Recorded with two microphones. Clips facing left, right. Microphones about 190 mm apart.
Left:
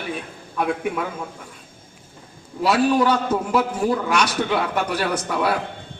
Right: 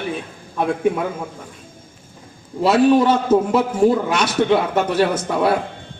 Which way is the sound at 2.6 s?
25° right (ahead or behind).